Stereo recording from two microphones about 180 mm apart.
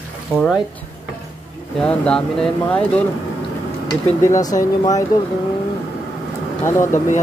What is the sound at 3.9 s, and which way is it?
Speech, 20° left (ahead or behind).